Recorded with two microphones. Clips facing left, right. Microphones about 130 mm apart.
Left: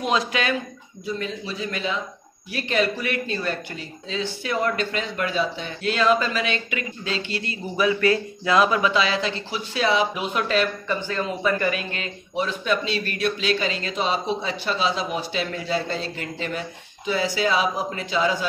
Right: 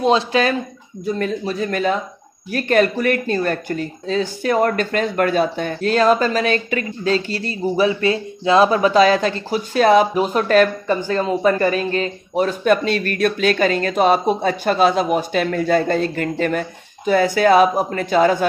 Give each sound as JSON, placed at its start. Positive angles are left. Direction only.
{"t": 0.0, "sound": "speech", "side_deg": -35}
{"t": 1.0, "sound": "speech", "side_deg": -50}